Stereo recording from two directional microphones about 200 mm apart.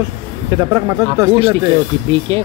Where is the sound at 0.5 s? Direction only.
15° right (ahead or behind).